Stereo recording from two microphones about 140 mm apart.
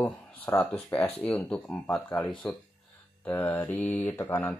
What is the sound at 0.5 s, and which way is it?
Speech, 15° left (ahead or behind).